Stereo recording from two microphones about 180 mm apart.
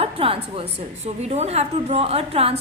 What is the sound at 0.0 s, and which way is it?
A woman's voice, 30° right (ahead or behind).